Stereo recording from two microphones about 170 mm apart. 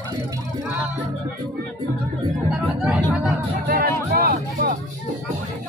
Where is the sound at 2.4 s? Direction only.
5° right (ahead or behind).